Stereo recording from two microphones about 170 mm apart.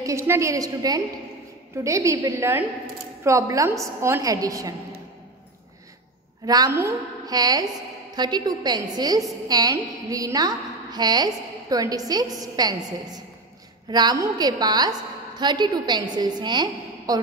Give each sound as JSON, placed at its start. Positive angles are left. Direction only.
{"t": 0.0, "sound": "a woman's voice", "side_deg": -15}
{"t": 6.4, "sound": "a woman's voice", "side_deg": -20}